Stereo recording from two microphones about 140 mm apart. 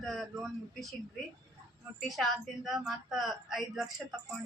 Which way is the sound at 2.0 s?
Centre (ahead or behind).